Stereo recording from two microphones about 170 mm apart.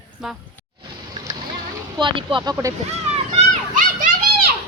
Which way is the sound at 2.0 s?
30° right (ahead or behind).